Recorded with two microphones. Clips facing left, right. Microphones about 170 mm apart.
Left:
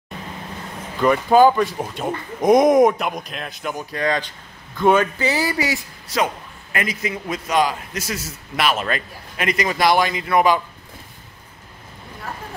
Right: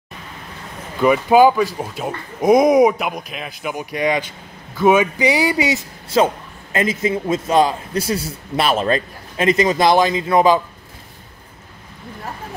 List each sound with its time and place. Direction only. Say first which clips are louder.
1.0 s a man's voice: right 2 dB; 10° right (ahead or behind)